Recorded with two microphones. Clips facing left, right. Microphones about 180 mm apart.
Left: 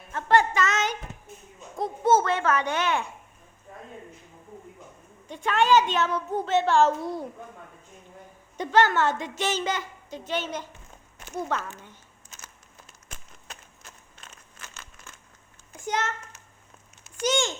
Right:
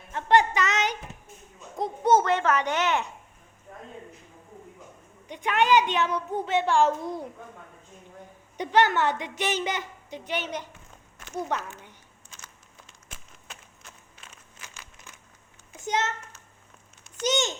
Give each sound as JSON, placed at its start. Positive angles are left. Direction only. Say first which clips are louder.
{"t": 0.1, "sound": "a sound", "louder": "right 1 dB", "side_deg": -20}
{"t": 1.7, "sound": "babbling", "louder": "even", "side_deg": -20}
{"t": 5.3, "sound": "a child's voice", "louder": "left 1 dB", "side_deg": -15}
{"t": 8.5, "sound": "a child's voice", "louder": "left 1 dB", "side_deg": -15}
{"t": 14.2, "sound": "crumpling", "louder": "left 3 dB", "side_deg": -10}
{"t": 15.8, "sound": "a child's voice", "louder": "right 1 dB", "side_deg": -20}
{"t": 17.2, "sound": "a sound", "louder": "left 1 dB", "side_deg": -20}